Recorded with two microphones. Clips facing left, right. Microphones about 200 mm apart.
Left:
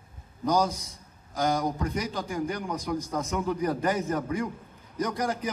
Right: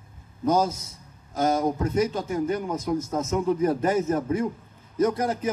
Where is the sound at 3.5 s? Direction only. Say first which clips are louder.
Right 5 dB; 25° right (ahead or behind).